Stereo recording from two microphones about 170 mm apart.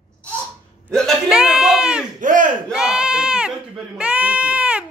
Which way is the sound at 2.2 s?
50° right (ahead or behind).